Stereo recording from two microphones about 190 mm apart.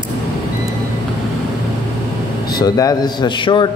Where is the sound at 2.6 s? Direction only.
20° left (ahead or behind).